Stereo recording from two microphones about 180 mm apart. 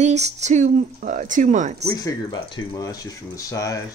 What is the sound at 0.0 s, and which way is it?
Speech, 40° right (ahead or behind).